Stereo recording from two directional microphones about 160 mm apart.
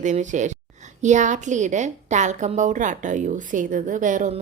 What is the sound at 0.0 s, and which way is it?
A woman's voice, 50° right (ahead or behind).